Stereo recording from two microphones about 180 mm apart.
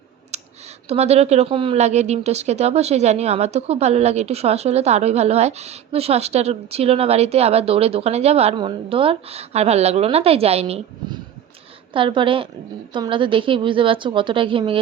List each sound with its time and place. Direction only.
0.3 s clicking: 40° right (ahead or behind)
0.9 s a woman's voice: 35° right (ahead or behind)